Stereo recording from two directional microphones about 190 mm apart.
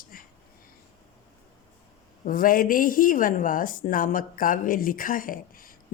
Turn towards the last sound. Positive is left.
turn(degrees=50)  # may be behind; listen again after turning